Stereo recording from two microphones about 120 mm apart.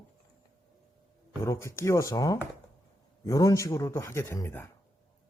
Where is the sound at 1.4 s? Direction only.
20° left (ahead or behind).